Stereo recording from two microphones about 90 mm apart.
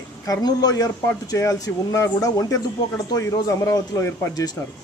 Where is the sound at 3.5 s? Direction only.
40° left (ahead or behind).